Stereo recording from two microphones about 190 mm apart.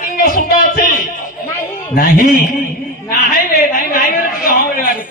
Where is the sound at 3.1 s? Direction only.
45° left (ahead or behind).